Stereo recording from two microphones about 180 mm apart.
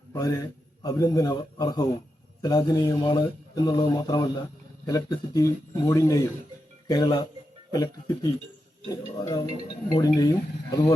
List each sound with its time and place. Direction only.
0.1 s speech: 20° left (ahead or behind)